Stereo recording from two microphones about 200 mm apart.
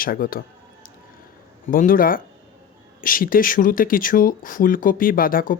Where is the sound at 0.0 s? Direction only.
45° left (ahead or behind).